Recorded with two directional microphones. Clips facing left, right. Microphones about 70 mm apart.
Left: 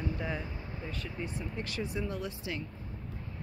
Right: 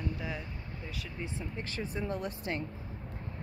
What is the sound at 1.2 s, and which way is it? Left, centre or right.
Speech, right.